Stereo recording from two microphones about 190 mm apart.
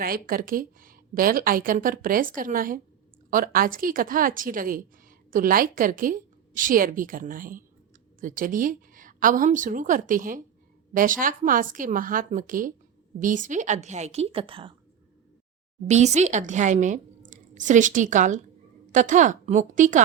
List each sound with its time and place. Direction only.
0.0 s a woman's voice: 50° right (ahead or behind); by 14.7 s 30° right (ahead or behind)
15.9 s a woman's voice: 35° right (ahead or behind)